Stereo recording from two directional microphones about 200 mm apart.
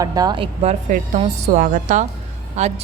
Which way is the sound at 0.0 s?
20° right (ahead or behind).